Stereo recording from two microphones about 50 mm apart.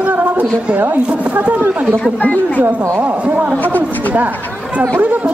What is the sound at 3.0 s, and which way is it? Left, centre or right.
Speech, right.